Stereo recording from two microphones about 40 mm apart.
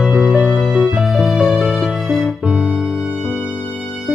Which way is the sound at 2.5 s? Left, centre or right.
Centre.